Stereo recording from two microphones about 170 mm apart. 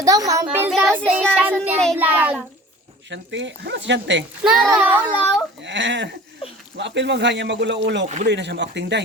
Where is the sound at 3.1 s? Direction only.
90° right.